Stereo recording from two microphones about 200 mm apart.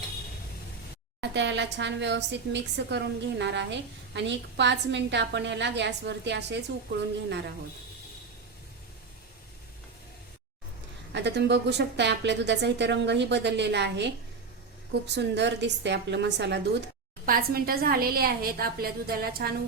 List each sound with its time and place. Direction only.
1.2 s speech: 60° right (ahead or behind)
11.1 s speech: 60° right (ahead or behind)
17.2 s a woman's voice: 45° right (ahead or behind)